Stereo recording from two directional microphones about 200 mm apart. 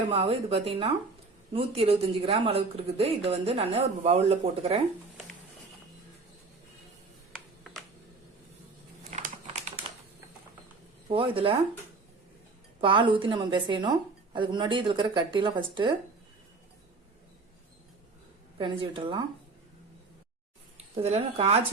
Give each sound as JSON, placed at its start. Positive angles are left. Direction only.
{"t": 0.1, "sound": "a woman's voice", "side_deg": -30}
{"t": 9.0, "sound": "a sound", "side_deg": -35}
{"t": 11.1, "sound": "a woman's voice", "side_deg": -25}
{"t": 12.8, "sound": "a woman's voice", "side_deg": -25}
{"t": 18.5, "sound": "a woman's voice", "side_deg": -25}
{"t": 20.7, "sound": "speech", "side_deg": -30}